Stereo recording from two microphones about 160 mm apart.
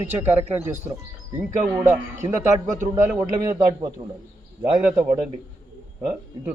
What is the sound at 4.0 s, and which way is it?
Speech, 25° right (ahead or behind).